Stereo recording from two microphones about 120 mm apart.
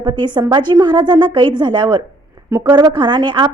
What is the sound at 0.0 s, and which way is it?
A woman's voice, 40° right (ahead or behind).